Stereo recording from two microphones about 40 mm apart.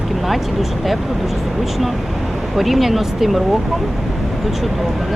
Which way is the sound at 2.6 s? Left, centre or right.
Centre.